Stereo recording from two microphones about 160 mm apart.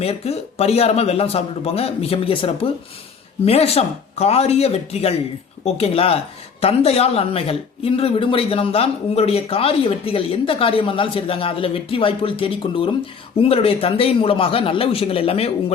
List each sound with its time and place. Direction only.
0.0 s speech: 40° left (ahead or behind)